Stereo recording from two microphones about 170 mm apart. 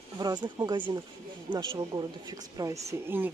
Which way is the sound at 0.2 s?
25° right (ahead or behind).